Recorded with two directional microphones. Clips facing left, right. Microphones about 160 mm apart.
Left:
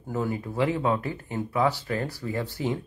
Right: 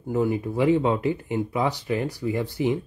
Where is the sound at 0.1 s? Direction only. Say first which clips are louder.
Right 5 dB; 20° right (ahead or behind).